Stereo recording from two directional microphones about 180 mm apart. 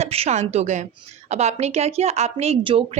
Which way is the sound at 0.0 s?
35° right (ahead or behind).